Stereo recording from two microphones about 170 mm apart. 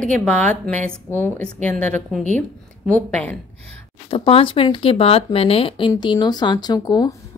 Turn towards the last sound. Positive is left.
turn(degrees=20)  # may be behind; listen again after turning